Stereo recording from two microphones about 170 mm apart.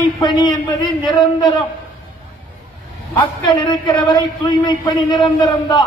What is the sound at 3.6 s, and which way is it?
A man's voice, 30° left (ahead or behind).